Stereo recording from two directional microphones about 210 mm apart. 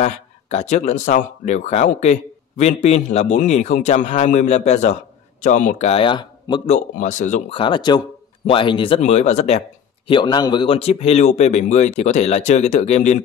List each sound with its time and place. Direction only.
0.0 s speech: 30° left (ahead or behind)
6.7 s speech: 35° left (ahead or behind)
10.0 s speech: 20° left (ahead or behind)